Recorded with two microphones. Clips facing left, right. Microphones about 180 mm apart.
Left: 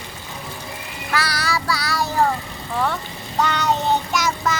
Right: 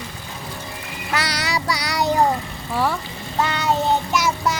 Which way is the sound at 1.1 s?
20° right (ahead or behind).